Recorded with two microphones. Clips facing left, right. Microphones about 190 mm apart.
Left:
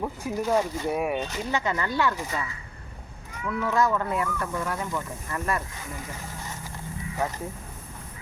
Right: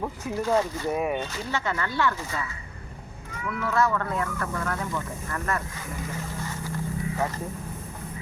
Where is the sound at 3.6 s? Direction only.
15° left (ahead or behind).